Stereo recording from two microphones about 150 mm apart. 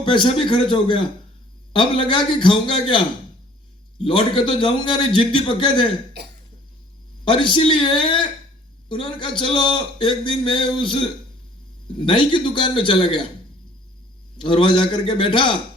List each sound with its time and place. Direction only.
0.0 s a man's voice: 35° left (ahead or behind)
6.2 s speech: 90° right
7.3 s a man's voice: 35° left (ahead or behind)
14.3 s a man's voice: 35° left (ahead or behind)